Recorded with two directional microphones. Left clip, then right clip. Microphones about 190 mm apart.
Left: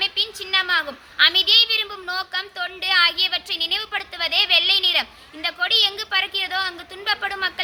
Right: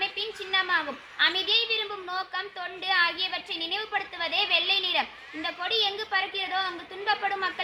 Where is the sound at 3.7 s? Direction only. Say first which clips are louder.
Left 5 dB; 25° left (ahead or behind).